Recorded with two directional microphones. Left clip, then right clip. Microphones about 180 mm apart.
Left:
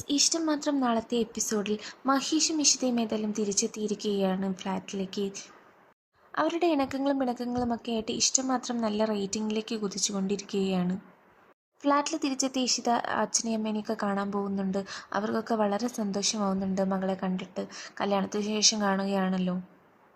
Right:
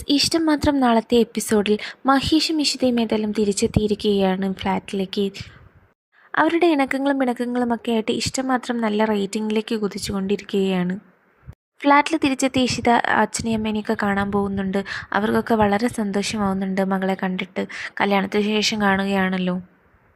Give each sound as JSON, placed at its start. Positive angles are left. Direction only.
{"t": 0.1, "sound": "a woman's voice", "side_deg": -35}